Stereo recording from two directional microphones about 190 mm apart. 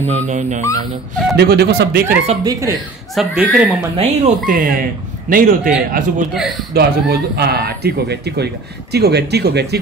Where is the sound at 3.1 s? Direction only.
Centre (ahead or behind).